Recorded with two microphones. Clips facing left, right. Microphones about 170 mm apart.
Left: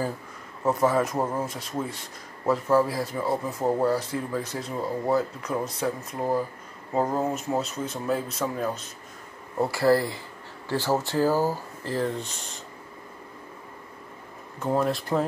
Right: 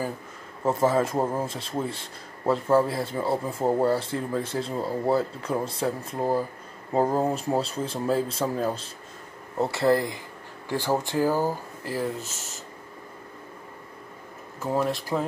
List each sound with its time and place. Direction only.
0.7 s a man's voice: 25° right (ahead or behind); by 12.5 s 5° right (ahead or behind)
14.6 s speech: 5° right (ahead or behind)